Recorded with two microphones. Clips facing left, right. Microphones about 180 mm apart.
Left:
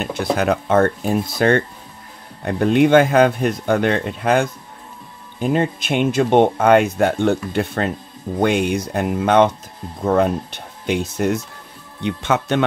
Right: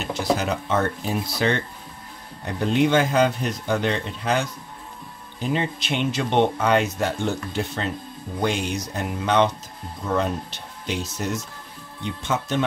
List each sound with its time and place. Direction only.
0.0 s speech: 55° left (ahead or behind)
12.0 s speech: 70° left (ahead or behind)